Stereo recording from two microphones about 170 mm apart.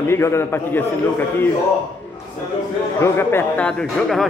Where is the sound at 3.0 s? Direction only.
15° left (ahead or behind).